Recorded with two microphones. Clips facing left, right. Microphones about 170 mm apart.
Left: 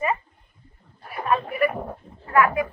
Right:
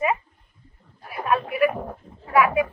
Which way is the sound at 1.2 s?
10° right (ahead or behind).